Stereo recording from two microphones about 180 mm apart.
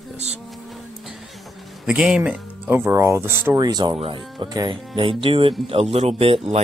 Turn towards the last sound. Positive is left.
turn(degrees=-30)  # may be behind; listen again after turning